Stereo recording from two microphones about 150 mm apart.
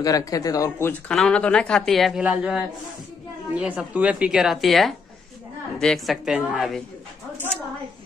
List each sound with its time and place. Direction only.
0.0 s speech: 25° left (ahead or behind); by 6.8 s 5° right (ahead or behind)